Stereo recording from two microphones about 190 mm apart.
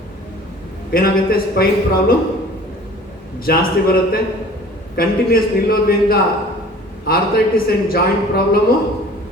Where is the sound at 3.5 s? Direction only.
50° left (ahead or behind).